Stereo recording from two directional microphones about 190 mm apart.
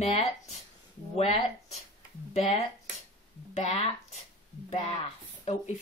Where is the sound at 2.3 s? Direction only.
35° left (ahead or behind).